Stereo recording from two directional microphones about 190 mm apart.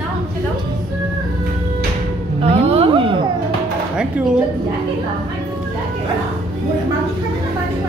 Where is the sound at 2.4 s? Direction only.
30° right (ahead or behind).